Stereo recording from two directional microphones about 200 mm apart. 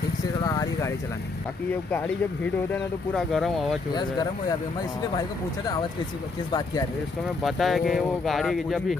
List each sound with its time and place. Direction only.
0.5 s vehicle: 15° left (ahead or behind)
2.7 s speech: centre (ahead or behind)
3.9 s speech: 20° left (ahead or behind)
6.5 s speech: 15° left (ahead or behind)
7.4 s speech: centre (ahead or behind)